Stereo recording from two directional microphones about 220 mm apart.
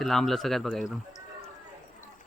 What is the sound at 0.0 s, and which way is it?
Speech, centre (ahead or behind).